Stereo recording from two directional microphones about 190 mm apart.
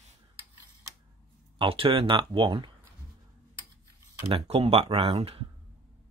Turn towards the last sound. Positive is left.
turn(degrees=-30)  # may be behind; listen again after turning